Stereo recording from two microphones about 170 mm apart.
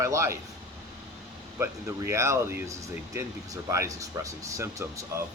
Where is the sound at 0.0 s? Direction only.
15° right (ahead or behind).